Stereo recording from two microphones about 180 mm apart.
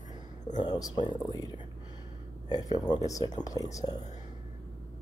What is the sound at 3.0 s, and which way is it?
Speech, 20° left (ahead or behind).